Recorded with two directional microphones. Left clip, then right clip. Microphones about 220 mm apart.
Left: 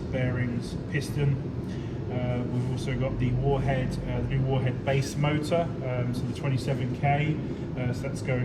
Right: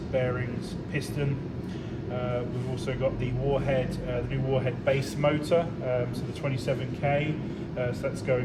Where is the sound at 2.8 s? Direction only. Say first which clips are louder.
Right 4 dB; 15° right (ahead or behind).